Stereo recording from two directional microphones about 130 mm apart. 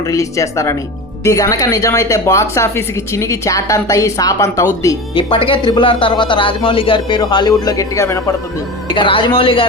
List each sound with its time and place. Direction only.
0.0 s speech: 25° left (ahead or behind)
5.1 s a man's voice: 40° left (ahead or behind); by 8.2 s 25° left (ahead or behind)
8.9 s speech: 40° left (ahead or behind)